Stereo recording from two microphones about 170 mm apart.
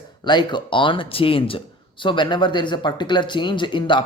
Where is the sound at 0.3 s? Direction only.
25° left (ahead or behind).